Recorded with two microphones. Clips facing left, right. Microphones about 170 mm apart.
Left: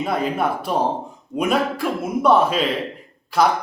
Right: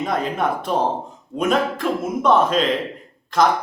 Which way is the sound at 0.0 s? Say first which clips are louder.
Even; 5° left (ahead or behind).